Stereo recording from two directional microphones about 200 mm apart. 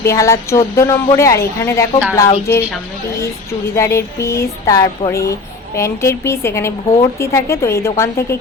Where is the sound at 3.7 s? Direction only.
15° left (ahead or behind).